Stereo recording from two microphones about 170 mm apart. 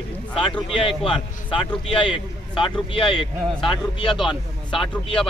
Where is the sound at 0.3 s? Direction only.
30° left (ahead or behind).